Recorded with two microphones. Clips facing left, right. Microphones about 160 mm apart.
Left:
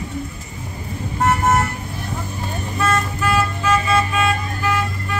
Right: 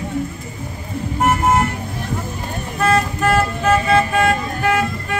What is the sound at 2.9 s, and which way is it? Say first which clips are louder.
Vehicle: right 5 dB; 55° right (ahead or behind).